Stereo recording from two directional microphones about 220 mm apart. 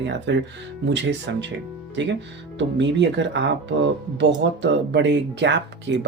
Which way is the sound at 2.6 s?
55° right (ahead or behind).